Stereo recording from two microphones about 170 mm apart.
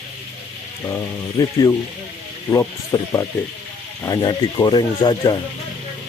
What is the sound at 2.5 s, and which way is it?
Speech, 15° left (ahead or behind).